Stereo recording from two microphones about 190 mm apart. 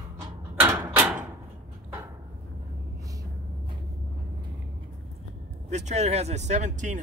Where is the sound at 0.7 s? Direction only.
20° right (ahead or behind).